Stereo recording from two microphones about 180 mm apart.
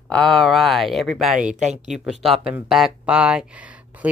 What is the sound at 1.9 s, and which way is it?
Speech, 5° right (ahead or behind).